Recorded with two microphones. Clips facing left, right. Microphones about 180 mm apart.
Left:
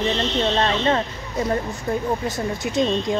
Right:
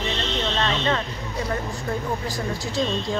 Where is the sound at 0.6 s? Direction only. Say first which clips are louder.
Left 2 dB; 35° left (ahead or behind).